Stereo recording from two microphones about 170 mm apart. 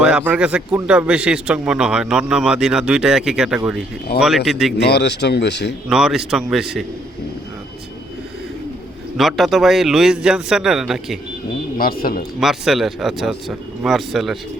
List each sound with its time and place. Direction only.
0.0 s speech: 5° right (ahead or behind)
4.8 s speech: 80° left
5.9 s speech: centre (ahead or behind)
9.1 s speech: centre (ahead or behind)
11.8 s speech: 60° left (ahead or behind)
12.4 s speech: centre (ahead or behind)